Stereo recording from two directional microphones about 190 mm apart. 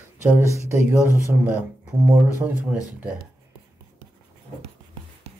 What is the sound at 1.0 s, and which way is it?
Speech, 10° right (ahead or behind).